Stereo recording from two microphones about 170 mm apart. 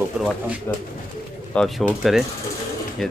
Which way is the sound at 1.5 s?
Centre (ahead or behind).